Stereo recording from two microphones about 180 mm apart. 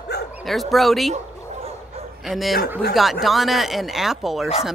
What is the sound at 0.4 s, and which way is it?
Speech, centre (ahead or behind).